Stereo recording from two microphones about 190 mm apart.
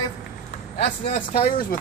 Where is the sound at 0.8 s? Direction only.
35° left (ahead or behind).